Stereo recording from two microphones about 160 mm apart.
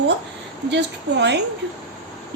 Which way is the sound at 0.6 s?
90° right.